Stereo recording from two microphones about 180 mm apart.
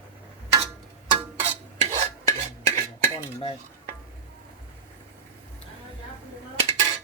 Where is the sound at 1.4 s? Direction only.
35° right (ahead or behind).